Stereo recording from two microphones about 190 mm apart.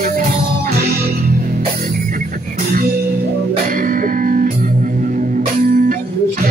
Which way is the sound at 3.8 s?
45° right (ahead or behind).